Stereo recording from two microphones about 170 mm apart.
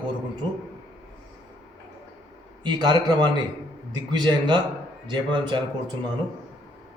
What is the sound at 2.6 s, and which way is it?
A man's voice, 25° right (ahead or behind).